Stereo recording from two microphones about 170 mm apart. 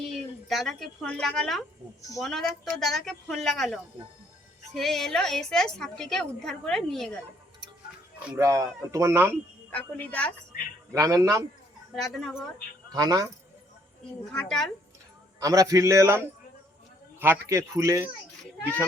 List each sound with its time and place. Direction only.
0.1 s a woman's voice: centre (ahead or behind)
8.4 s speech: 20° right (ahead or behind)
9.6 s a woman's voice: 10° left (ahead or behind)
10.9 s a man's voice: 20° right (ahead or behind)
11.9 s a woman's voice: centre (ahead or behind)
12.9 s a man's voice: 20° right (ahead or behind)
14.3 s a woman's voice: 5° left (ahead or behind)
15.4 s speech: 20° right (ahead or behind)